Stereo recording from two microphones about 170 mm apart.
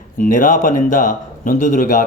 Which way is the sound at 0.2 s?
50° left (ahead or behind).